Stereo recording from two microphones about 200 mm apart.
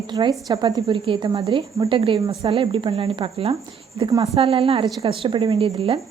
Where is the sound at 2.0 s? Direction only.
30° right (ahead or behind).